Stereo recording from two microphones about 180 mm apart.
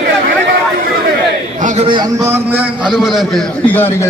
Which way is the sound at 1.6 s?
40° right (ahead or behind).